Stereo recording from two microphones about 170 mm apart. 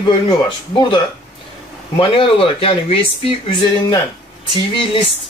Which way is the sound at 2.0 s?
30° left (ahead or behind).